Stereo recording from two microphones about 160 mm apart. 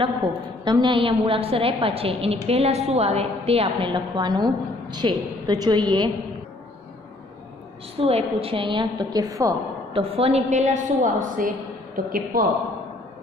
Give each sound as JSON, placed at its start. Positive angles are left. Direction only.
{"t": 0.0, "sound": "a woman's voice", "side_deg": -30}
{"t": 8.0, "sound": "a woman's voice", "side_deg": -40}
{"t": 9.9, "sound": "a woman's voice", "side_deg": -40}